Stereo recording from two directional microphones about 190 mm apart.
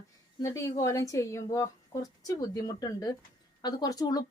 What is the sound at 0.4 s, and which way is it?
A woman's voice, 15° left (ahead or behind).